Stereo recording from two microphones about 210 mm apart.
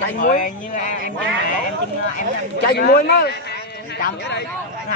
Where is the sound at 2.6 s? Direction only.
50° left (ahead or behind).